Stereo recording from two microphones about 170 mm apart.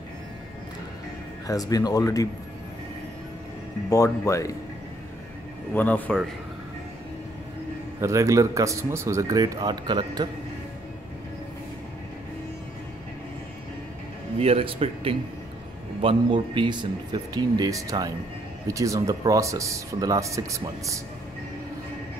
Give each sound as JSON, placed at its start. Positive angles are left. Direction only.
{"t": 1.5, "sound": "speech", "side_deg": 20}
{"t": 3.9, "sound": "speech", "side_deg": 20}
{"t": 5.8, "sound": "speech", "side_deg": 10}
{"t": 8.0, "sound": "speech", "side_deg": -20}
{"t": 14.4, "sound": "speech", "side_deg": -35}